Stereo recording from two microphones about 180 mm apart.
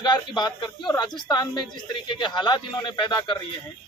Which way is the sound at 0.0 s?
25° left (ahead or behind).